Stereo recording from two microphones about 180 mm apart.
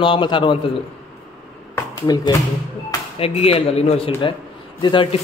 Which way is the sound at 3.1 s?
35° left (ahead or behind).